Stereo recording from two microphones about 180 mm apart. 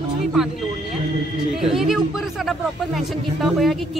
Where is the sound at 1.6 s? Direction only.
Centre (ahead or behind).